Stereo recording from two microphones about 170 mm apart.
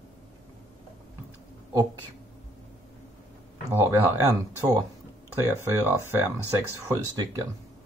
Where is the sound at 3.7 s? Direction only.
15° right (ahead or behind).